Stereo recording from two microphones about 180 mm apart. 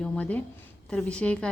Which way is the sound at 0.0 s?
5° left (ahead or behind).